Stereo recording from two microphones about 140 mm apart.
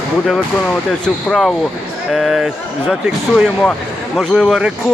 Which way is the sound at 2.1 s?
Centre (ahead or behind).